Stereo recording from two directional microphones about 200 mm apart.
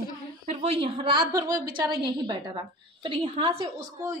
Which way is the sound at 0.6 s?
30° right (ahead or behind).